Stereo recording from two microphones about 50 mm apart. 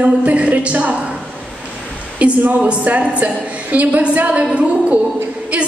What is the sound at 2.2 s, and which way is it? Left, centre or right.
A woman's voice, right.